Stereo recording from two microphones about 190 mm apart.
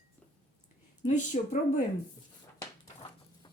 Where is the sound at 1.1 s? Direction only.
40° left (ahead or behind).